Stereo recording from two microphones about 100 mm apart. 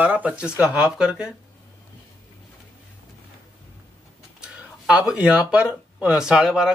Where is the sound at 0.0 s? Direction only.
15° right (ahead or behind).